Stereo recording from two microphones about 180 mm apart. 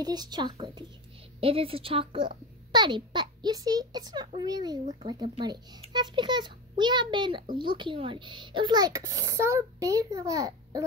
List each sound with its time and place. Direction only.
0.0 s a child's voice: 20° right (ahead or behind)